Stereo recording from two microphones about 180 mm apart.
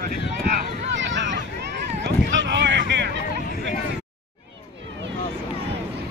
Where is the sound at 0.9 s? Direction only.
85° right.